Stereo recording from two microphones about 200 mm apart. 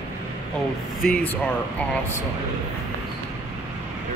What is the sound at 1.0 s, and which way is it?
Speech, 5° left (ahead or behind).